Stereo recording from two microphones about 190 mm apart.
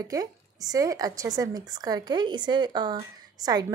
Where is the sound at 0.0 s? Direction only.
20° right (ahead or behind).